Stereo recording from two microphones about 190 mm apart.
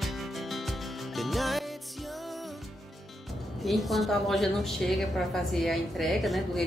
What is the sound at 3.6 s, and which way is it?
A woman's voice, centre (ahead or behind).